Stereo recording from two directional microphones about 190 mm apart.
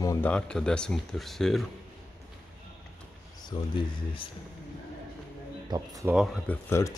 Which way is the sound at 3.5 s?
25° left (ahead or behind).